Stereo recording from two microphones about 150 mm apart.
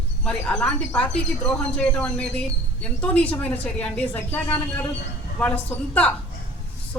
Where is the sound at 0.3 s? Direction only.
5° left (ahead or behind).